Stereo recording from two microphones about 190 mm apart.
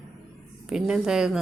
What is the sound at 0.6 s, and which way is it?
Speech, 5° right (ahead or behind).